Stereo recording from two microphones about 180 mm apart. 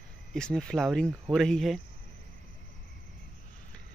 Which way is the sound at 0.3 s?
5° left (ahead or behind).